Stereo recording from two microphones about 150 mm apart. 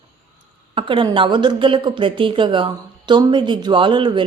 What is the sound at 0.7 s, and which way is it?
A woman's voice, 35° right (ahead or behind).